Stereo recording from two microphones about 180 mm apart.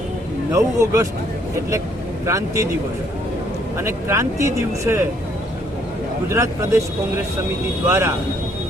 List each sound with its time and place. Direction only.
0.5 s speech: 15° right (ahead or behind)
2.2 s speech: 15° right (ahead or behind)
3.8 s speech: 15° right (ahead or behind)
6.3 s speech: 15° right (ahead or behind)
7.9 s speech: 15° right (ahead or behind)